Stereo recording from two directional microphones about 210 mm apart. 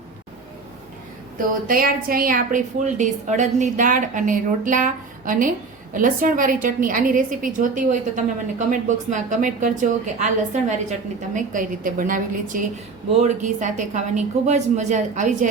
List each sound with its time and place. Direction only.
1.6 s a woman's voice: 45° right (ahead or behind)